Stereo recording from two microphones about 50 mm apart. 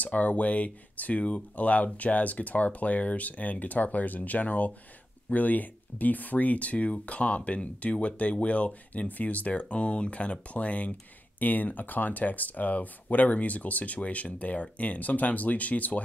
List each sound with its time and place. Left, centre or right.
0.0 s speech: left